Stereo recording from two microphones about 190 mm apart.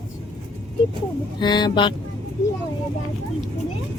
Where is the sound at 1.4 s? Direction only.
25° left (ahead or behind).